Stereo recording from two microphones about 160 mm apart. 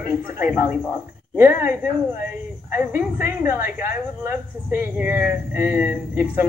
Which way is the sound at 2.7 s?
15° right (ahead or behind).